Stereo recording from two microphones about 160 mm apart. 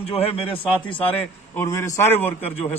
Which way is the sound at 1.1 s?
15° left (ahead or behind).